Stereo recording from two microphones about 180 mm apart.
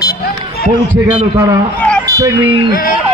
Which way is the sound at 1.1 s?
10° right (ahead or behind).